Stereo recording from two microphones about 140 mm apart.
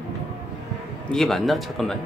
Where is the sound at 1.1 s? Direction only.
Centre (ahead or behind).